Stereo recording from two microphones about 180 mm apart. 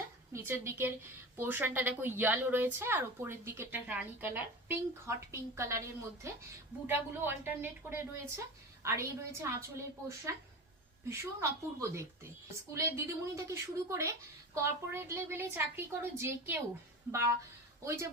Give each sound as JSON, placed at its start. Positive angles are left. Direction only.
{"t": 0.3, "sound": "a woman's voice", "side_deg": -15}